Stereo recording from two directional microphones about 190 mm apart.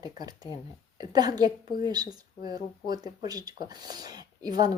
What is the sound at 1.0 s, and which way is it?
Speech, 20° right (ahead or behind).